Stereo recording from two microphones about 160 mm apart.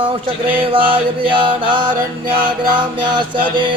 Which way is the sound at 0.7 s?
30° right (ahead or behind).